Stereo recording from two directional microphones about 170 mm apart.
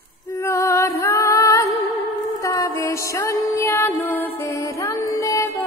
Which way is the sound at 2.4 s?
15° left (ahead or behind).